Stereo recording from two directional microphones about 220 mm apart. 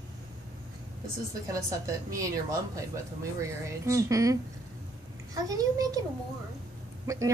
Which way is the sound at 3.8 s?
15° right (ahead or behind).